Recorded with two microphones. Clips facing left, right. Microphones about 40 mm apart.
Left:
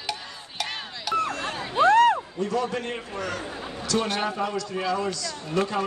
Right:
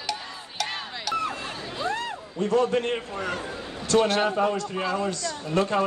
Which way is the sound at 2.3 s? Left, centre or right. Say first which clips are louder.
Right 4 dB; right.